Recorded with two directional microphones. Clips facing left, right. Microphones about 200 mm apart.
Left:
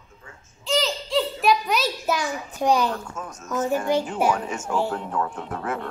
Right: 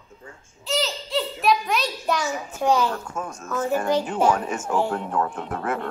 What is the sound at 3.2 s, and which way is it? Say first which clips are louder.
Speech: right 4 dB; 55° right (ahead or behind).